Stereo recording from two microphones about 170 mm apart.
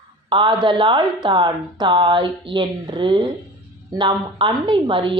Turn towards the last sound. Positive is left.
turn(degrees=-30)  # may be behind; listen again after turning